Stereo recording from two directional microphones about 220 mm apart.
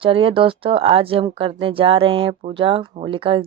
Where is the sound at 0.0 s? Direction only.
25° right (ahead or behind).